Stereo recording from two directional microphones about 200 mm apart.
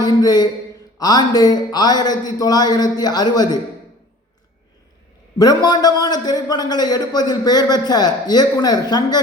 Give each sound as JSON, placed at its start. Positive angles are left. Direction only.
{"t": 0.0, "sound": "a man's voice", "side_deg": 20}
{"t": 5.4, "sound": "a man's voice", "side_deg": 20}